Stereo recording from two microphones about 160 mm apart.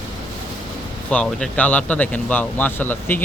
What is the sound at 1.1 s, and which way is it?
Speech, 10° left (ahead or behind).